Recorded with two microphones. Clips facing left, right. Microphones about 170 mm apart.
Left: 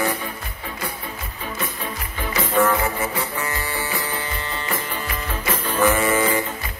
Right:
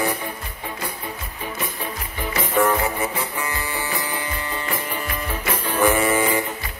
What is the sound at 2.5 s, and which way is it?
Music, 15° right (ahead or behind).